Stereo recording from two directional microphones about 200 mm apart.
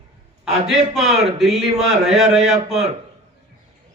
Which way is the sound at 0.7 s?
Centre (ahead or behind).